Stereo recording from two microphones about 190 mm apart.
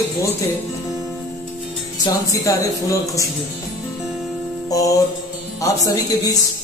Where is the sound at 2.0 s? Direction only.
20° left (ahead or behind).